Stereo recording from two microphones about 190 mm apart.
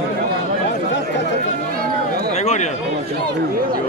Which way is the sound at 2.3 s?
35° left (ahead or behind).